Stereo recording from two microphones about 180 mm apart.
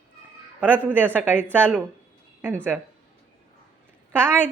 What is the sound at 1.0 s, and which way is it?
Speech, 10° right (ahead or behind).